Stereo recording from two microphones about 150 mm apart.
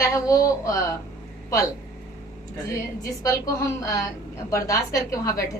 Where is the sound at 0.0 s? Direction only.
20° left (ahead or behind).